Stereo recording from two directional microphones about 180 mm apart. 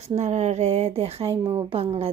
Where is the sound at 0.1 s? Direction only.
40° right (ahead or behind).